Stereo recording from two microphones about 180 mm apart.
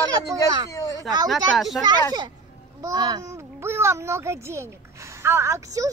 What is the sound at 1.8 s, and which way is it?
A child's voice, 25° right (ahead or behind).